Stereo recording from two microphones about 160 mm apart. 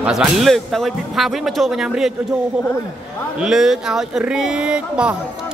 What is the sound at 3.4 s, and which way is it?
Speech, 5° right (ahead or behind).